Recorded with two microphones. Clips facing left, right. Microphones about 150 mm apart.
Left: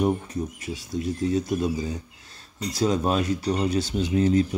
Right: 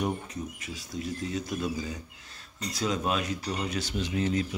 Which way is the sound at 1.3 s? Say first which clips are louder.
Left 7 dB; 25° left (ahead or behind).